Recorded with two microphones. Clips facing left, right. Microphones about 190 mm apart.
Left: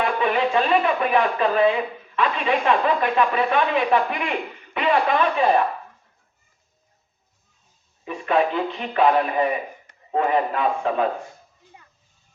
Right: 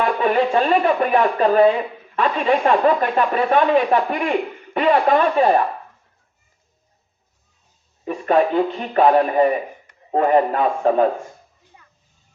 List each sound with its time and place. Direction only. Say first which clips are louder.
0.0 s speech: right 3 dB; 45° right (ahead or behind)
8.0 s speech: right 4 dB; 45° right (ahead or behind)